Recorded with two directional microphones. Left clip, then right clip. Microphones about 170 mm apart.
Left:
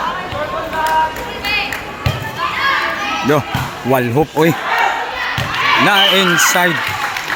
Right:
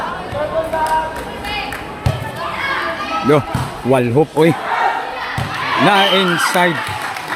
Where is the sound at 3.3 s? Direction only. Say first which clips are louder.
Right 4 dB; centre (ahead or behind).